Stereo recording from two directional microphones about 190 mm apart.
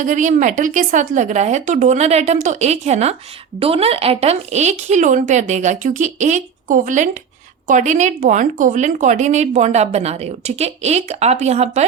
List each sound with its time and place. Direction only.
0.0 s speech: 40° right (ahead or behind)